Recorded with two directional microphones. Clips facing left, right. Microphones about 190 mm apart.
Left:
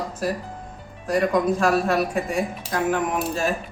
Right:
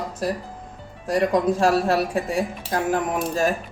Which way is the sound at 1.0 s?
30° right (ahead or behind).